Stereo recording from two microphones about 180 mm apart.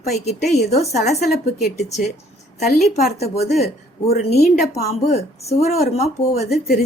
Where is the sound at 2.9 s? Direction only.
35° left (ahead or behind).